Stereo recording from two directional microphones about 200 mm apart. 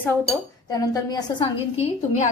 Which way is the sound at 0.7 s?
20° left (ahead or behind).